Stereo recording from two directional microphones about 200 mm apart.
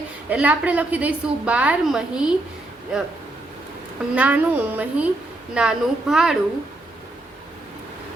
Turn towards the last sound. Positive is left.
turn(degrees=-5)  # may be behind; listen again after turning